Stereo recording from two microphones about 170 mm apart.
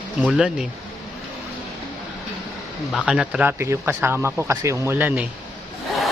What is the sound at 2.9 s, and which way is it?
Speech, 5° right (ahead or behind).